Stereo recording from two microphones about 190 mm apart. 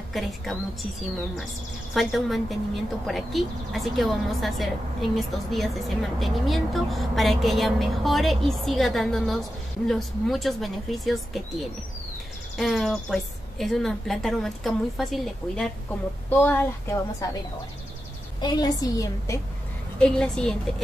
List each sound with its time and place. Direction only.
0.1 s a woman's voice: centre (ahead or behind)
2.0 s a woman's voice: centre (ahead or behind)
18.4 s a woman's voice: 20° left (ahead or behind)
20.0 s a woman's voice: 5° left (ahead or behind)